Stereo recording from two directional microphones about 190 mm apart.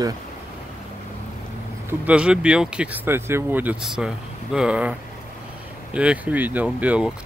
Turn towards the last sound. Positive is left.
turn(degrees=-5)  # may be behind; listen again after turning